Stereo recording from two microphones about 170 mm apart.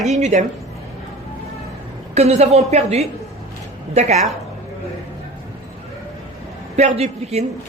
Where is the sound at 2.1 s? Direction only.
40° right (ahead or behind).